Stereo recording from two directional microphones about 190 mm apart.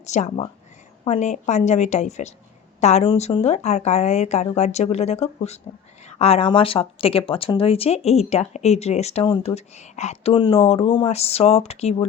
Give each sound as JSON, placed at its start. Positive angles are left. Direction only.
{"t": 0.0, "sound": "speech", "side_deg": 35}